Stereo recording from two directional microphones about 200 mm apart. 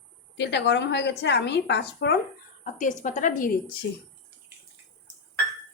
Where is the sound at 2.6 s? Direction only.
40° left (ahead or behind).